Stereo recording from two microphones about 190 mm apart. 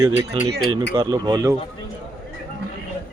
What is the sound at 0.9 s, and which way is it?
Speech, 20° right (ahead or behind).